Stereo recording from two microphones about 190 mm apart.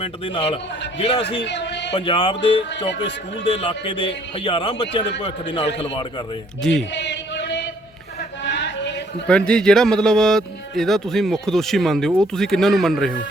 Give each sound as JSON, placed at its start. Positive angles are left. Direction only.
{"t": 0.0, "sound": "a man's voice", "side_deg": 30}
{"t": 1.4, "sound": "a sound", "side_deg": 65}
{"t": 1.9, "sound": "a man's voice", "side_deg": 25}
{"t": 6.6, "sound": "speech", "side_deg": 0}
{"t": 6.9, "sound": "chant", "side_deg": 65}
{"t": 8.4, "sound": "a sound", "side_deg": 65}
{"t": 9.2, "sound": "speech", "side_deg": 5}